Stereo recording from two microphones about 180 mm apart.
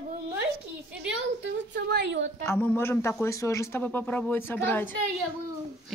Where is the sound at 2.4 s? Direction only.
15° left (ahead or behind).